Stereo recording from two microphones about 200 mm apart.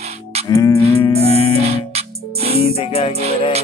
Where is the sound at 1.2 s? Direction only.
30° right (ahead or behind).